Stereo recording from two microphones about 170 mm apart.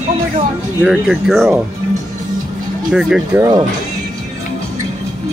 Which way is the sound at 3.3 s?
15° right (ahead or behind).